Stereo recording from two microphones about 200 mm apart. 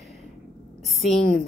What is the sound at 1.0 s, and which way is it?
Speech, centre (ahead or behind).